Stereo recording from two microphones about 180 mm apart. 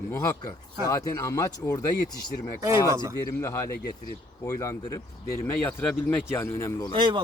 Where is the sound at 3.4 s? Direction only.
15° left (ahead or behind).